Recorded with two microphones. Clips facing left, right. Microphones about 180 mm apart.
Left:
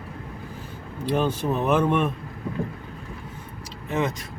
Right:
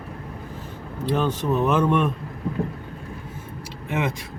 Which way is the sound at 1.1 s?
10° left (ahead or behind).